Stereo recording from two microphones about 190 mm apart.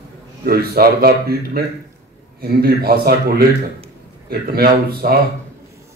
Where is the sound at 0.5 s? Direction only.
55° right (ahead or behind).